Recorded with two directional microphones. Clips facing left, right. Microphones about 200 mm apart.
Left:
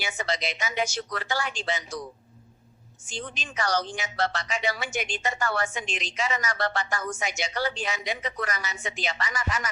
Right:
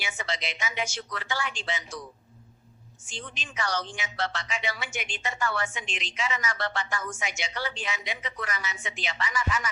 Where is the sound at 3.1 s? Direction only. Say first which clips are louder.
Left 5 dB; 40° left (ahead or behind).